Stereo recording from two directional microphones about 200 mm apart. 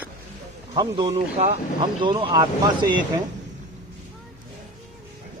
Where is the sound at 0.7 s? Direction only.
25° right (ahead or behind).